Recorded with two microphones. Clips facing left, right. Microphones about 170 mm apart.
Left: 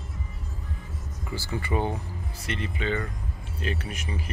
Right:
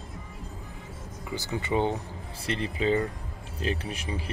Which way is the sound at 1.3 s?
20° right (ahead or behind).